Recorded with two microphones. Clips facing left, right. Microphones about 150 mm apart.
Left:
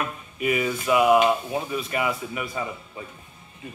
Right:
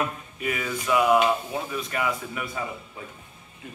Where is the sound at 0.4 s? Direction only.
10° left (ahead or behind).